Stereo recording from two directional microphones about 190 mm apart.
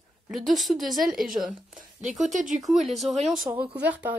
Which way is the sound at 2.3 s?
40° right (ahead or behind).